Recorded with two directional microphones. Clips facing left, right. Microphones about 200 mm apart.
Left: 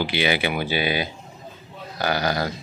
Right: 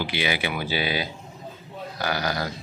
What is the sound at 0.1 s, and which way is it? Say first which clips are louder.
Speech: left 4 dB; 65° left (ahead or behind).